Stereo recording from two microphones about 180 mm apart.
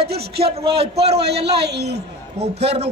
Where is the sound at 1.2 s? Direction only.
65° right (ahead or behind).